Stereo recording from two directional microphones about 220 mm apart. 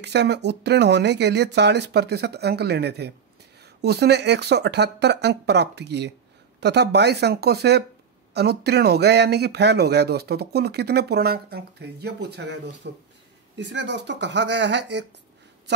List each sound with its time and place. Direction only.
0.0 s speech: 50° right (ahead or behind)